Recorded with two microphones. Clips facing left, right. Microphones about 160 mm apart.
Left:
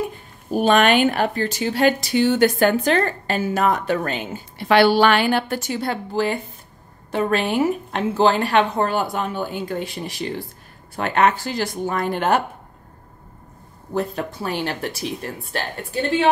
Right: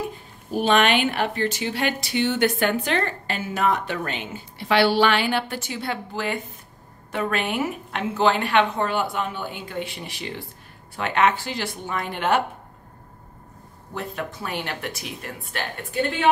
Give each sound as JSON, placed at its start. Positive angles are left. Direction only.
{"t": 0.5, "sound": "speech", "side_deg": 45}
{"t": 13.9, "sound": "speech", "side_deg": 35}